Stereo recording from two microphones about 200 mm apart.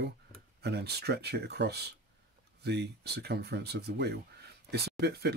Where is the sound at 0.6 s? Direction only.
55° right (ahead or behind).